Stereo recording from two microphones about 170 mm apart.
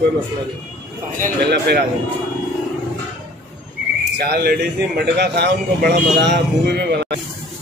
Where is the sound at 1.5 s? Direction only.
70° right (ahead or behind).